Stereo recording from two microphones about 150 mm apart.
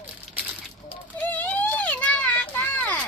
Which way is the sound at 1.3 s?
10° left (ahead or behind).